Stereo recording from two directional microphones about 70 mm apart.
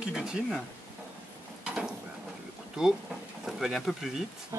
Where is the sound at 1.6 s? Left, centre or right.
Centre.